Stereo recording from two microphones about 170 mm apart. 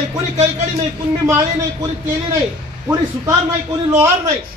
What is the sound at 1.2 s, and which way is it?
A man's voice, 20° right (ahead or behind).